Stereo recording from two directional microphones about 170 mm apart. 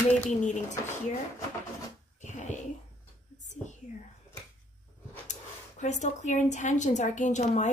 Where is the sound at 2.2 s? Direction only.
45° left (ahead or behind).